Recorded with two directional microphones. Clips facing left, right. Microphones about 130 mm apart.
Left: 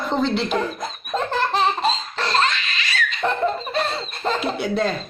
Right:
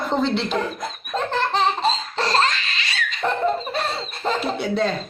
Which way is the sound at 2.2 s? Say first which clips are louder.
Right 1 dB; 35° right (ahead or behind).